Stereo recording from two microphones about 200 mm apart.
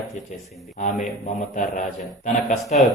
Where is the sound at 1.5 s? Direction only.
40° left (ahead or behind).